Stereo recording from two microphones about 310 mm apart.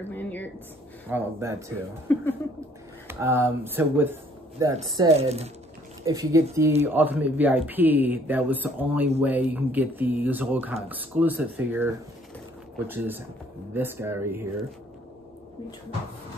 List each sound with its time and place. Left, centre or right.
0.1 s speech: centre
1.1 s speech: centre
2.1 s a sound: centre
3.1 s a woman's voice: centre